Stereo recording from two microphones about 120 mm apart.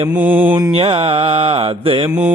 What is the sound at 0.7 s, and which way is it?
Mantra, 55° right (ahead or behind).